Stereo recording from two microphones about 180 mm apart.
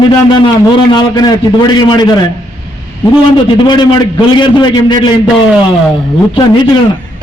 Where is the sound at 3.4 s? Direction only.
25° left (ahead or behind).